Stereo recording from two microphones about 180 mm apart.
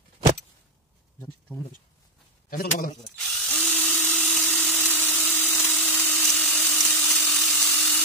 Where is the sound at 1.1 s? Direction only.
10° left (ahead or behind).